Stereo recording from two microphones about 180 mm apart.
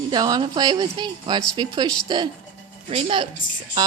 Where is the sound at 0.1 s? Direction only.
25° right (ahead or behind).